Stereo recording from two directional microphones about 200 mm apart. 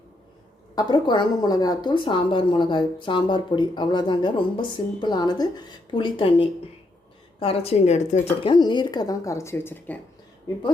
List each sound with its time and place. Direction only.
0.8 s a woman's voice: 20° left (ahead or behind)